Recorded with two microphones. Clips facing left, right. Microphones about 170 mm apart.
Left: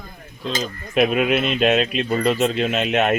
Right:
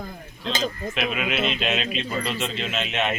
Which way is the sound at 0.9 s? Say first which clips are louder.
Left 14 dB; 45° left (ahead or behind).